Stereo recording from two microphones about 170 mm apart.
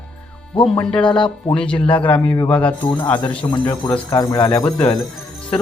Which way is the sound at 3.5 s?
25° left (ahead or behind).